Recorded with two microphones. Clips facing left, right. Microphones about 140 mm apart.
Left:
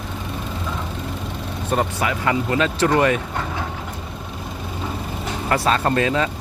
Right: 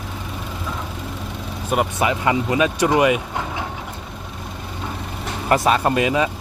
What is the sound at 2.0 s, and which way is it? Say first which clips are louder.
Speech: right 2 dB; 20° right (ahead or behind).